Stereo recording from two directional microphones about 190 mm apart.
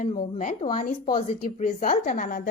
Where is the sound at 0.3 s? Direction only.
45° left (ahead or behind).